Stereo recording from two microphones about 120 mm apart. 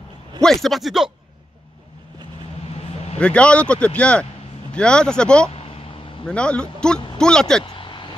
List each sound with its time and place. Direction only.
0.4 s speech: 5° left (ahead or behind)
3.2 s speech: 10° left (ahead or behind)
7.7 s a sound: 45° left (ahead or behind)